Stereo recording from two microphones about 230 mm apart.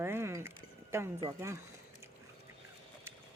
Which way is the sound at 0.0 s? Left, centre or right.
Centre.